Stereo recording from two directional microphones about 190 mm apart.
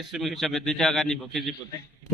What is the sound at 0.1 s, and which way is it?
A man's voice, centre (ahead or behind).